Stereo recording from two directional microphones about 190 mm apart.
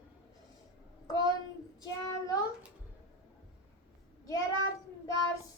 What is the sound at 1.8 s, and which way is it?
Child singing, 20° left (ahead or behind).